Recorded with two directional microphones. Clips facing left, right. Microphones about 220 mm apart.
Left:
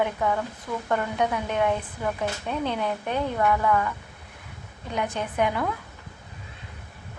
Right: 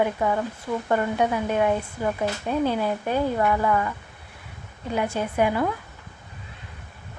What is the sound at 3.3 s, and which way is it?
Speech, 15° right (ahead or behind).